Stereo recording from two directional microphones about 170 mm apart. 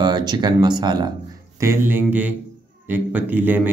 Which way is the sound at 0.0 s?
25° right (ahead or behind).